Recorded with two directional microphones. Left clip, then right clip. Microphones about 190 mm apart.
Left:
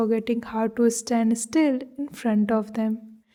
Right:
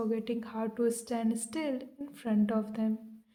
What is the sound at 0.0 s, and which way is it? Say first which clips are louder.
A woman's voice: left 10 dB; 45° left (ahead or behind).